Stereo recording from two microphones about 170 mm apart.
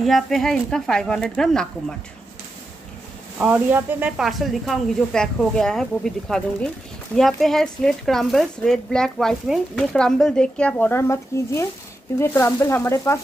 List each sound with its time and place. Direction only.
0.0 s speech: centre (ahead or behind)
3.3 s speech: 10° right (ahead or behind); by 13.2 s 15° left (ahead or behind)